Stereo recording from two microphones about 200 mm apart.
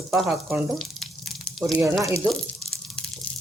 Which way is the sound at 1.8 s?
15° right (ahead or behind).